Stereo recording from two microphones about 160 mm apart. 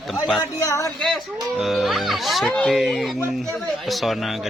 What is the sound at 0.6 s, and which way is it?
Speech, 20° left (ahead or behind).